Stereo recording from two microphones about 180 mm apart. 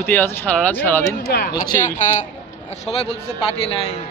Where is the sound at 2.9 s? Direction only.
35° left (ahead or behind).